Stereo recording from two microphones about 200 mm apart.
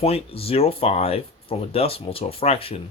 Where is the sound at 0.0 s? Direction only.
30° left (ahead or behind).